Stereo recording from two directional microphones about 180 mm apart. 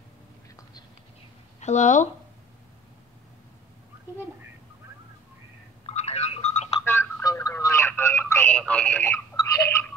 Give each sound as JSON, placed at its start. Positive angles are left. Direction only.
{"t": 1.6, "sound": "speech", "side_deg": 40}
{"t": 5.9, "sound": "a sound", "side_deg": 35}
{"t": 6.8, "sound": "telephone", "side_deg": 15}